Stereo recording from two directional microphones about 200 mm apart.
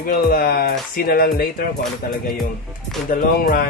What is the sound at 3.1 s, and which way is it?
Speech, 45° left (ahead or behind).